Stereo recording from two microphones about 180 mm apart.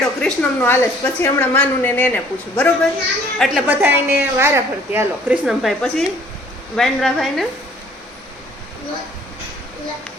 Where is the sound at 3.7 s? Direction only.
10° right (ahead or behind).